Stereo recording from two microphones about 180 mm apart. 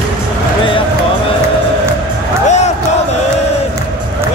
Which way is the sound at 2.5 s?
40° left (ahead or behind).